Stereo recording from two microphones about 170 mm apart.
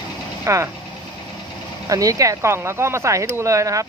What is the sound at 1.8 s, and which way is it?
Speech, 20° right (ahead or behind).